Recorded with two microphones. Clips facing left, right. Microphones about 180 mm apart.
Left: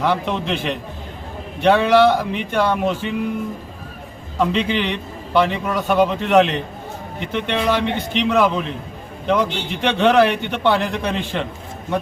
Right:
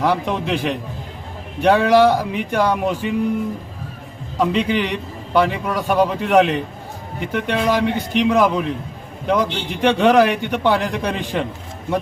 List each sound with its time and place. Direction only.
0.0 s a man's voice: 10° right (ahead or behind)
4.4 s a man's voice: 10° right (ahead or behind)